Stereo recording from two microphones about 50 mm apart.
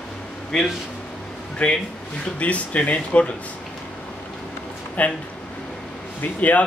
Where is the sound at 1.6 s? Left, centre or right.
Left.